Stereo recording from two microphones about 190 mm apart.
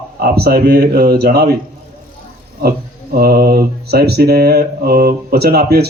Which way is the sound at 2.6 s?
55° right (ahead or behind).